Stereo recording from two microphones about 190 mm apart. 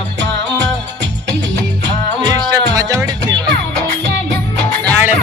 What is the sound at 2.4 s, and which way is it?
Music, 20° right (ahead or behind).